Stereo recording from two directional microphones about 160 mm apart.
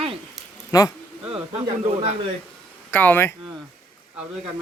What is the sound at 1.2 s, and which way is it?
Speech, 35° right (ahead or behind).